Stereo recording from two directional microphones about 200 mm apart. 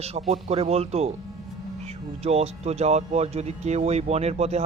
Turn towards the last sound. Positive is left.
turn(degrees=-30)  # may be behind; listen again after turning